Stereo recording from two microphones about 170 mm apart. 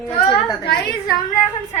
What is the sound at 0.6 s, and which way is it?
Speech, 70° left (ahead or behind).